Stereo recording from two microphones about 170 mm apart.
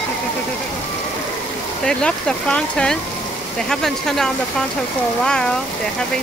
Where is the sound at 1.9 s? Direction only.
5° left (ahead or behind).